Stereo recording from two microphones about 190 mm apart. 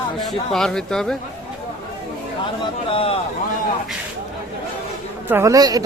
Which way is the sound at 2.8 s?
30° left (ahead or behind).